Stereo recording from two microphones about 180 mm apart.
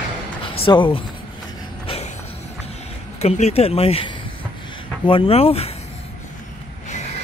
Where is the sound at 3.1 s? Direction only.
35° left (ahead or behind).